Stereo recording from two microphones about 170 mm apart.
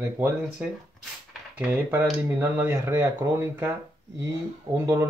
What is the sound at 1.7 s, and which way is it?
Speech, 15° right (ahead or behind).